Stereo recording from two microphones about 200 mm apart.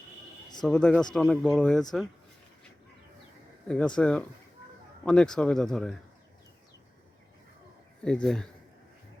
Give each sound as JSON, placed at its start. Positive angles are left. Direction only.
{"t": 0.6, "sound": "speech", "side_deg": 5}
{"t": 3.7, "sound": "speech", "side_deg": 5}
{"t": 8.0, "sound": "speech", "side_deg": 5}